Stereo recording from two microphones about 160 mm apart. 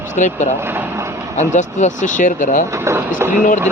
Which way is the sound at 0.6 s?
15° right (ahead or behind).